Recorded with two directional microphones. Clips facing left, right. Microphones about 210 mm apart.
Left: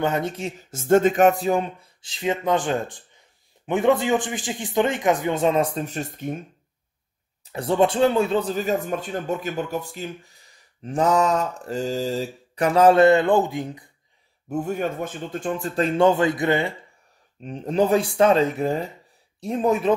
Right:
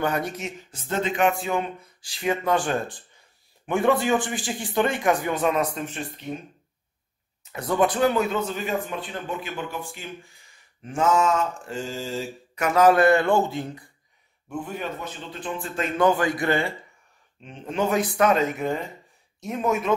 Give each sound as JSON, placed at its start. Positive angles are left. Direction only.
{"t": 0.0, "sound": "speech", "side_deg": 25}
{"t": 7.5, "sound": "speech", "side_deg": 30}
{"t": 14.5, "sound": "speech", "side_deg": 45}
{"t": 17.4, "sound": "speech", "side_deg": 40}